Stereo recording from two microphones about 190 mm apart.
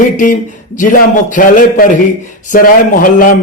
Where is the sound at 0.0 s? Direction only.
45° left (ahead or behind).